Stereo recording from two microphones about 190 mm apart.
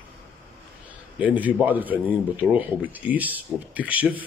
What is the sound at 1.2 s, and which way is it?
Speech, 10° right (ahead or behind).